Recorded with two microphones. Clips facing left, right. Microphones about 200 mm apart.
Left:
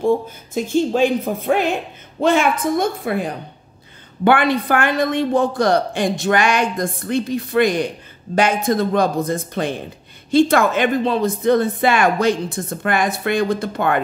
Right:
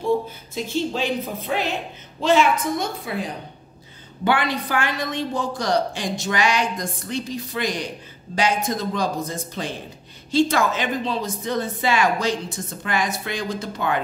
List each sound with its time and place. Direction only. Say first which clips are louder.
0.6 s a woman's voice: left 8 dB; 50° left (ahead or behind)